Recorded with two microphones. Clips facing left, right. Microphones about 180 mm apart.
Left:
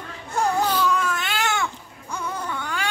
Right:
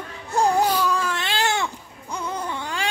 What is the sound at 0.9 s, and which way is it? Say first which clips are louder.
Baby cry: even; 30° right (ahead or behind).